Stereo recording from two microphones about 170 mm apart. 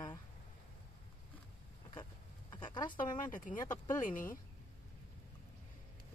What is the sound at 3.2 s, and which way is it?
Speech, 50° left (ahead or behind).